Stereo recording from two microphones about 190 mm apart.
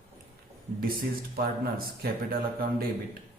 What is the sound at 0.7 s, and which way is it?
A man's voice, 50° right (ahead or behind).